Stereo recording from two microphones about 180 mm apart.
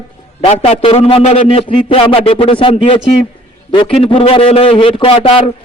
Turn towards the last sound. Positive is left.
turn(degrees=30)  # may be behind; listen again after turning